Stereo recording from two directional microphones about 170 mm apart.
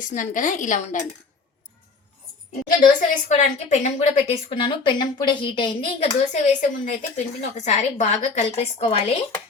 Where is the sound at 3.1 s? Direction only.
40° left (ahead or behind).